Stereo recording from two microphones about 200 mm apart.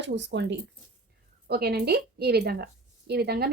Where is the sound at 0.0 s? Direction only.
60° right (ahead or behind).